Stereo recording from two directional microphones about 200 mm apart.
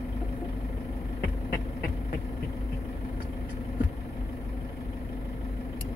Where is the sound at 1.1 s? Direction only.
50° left (ahead or behind).